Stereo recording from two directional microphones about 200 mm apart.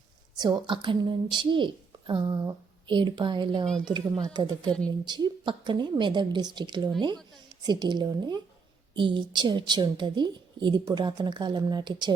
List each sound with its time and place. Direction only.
0.3 s a woman's voice: 20° right (ahead or behind)